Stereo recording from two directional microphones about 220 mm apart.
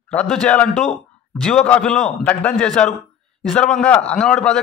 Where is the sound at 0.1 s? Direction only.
5° left (ahead or behind).